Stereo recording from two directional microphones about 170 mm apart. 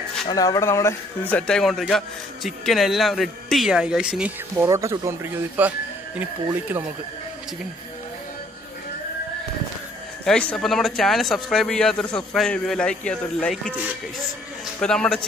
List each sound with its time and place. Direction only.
0.3 s a man's voice: 20° left (ahead or behind); by 4.6 s 5° right (ahead or behind)
4.6 s speech: 20° right (ahead or behind)
10.2 s a man's voice: 5° left (ahead or behind)
14.8 s a man's voice: 5° left (ahead or behind)